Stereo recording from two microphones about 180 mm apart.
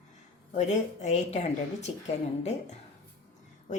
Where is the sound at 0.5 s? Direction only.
40° left (ahead or behind).